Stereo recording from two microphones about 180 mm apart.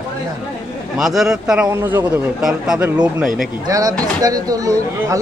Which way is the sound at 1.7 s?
15° right (ahead or behind).